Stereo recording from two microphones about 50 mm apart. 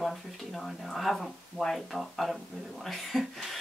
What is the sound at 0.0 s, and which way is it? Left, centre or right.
Speech, centre.